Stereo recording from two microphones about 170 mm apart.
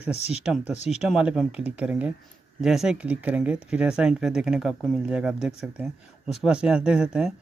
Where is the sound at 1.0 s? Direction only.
5° right (ahead or behind).